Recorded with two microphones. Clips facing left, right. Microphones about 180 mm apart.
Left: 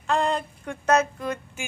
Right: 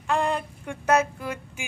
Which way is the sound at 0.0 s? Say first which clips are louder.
Left 1 dB; 10° right (ahead or behind).